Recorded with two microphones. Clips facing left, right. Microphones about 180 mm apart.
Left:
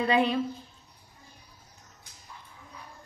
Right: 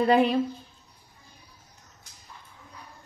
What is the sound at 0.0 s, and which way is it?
Speech, 45° right (ahead or behind).